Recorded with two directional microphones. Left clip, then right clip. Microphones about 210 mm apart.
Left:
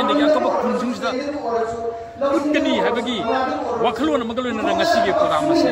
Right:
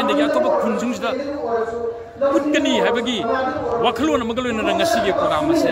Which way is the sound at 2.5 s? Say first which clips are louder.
Right 1 dB; 15° right (ahead or behind).